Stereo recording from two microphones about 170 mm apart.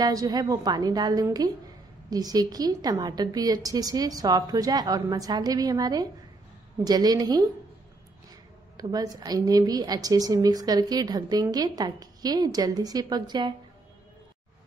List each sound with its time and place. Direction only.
0.0 s a woman's voice: 20° right (ahead or behind)
8.7 s a woman's voice: 20° right (ahead or behind)